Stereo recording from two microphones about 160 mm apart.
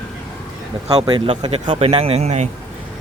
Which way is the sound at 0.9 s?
35° right (ahead or behind).